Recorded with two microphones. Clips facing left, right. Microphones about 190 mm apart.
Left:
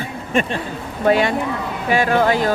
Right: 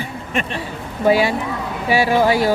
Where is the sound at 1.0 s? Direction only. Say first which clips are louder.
Even; 5° right (ahead or behind).